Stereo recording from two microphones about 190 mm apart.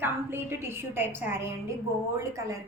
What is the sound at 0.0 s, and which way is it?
A woman's voice, 10° right (ahead or behind).